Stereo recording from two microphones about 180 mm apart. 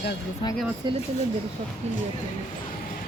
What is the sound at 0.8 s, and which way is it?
Speech, 25° right (ahead or behind).